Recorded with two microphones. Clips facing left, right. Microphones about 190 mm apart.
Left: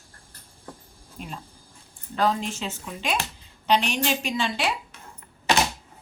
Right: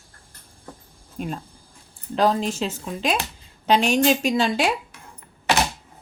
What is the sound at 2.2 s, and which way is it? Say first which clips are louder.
Speech: right 4 dB; 40° right (ahead or behind).